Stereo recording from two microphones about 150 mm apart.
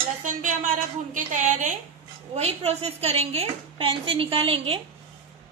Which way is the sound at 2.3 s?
45° right (ahead or behind).